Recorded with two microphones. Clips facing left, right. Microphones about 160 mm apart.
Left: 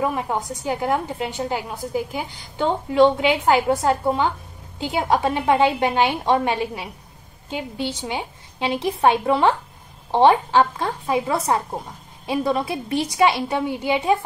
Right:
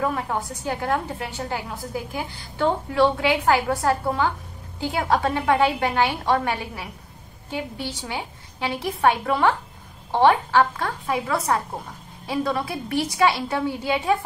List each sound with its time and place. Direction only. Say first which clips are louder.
0.0 s a woman's voice: left 2 dB; 15° left (ahead or behind)